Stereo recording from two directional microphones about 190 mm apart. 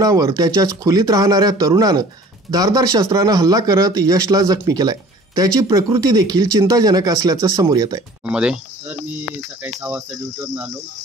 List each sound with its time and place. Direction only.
0.0 s speech: 20° right (ahead or behind)
8.3 s speech: 5° right (ahead or behind)